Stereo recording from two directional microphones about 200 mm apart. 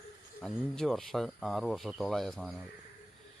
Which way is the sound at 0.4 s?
Centre (ahead or behind).